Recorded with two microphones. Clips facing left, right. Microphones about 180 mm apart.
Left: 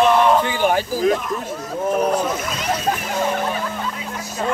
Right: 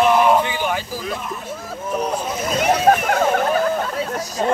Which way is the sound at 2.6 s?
65° right (ahead or behind).